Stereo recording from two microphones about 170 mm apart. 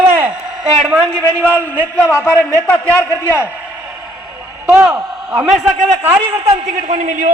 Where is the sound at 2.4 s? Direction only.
5° left (ahead or behind).